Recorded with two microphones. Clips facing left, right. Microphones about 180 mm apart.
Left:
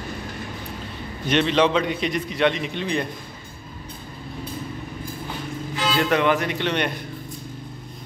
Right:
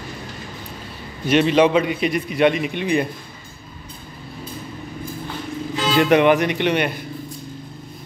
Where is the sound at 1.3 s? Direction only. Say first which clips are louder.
Right 4 dB; 10° right (ahead or behind).